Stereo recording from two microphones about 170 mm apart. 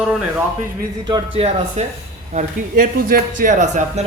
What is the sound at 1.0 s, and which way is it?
Speech, 25° right (ahead or behind).